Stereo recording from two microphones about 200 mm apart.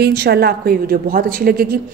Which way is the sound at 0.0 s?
55° right (ahead or behind).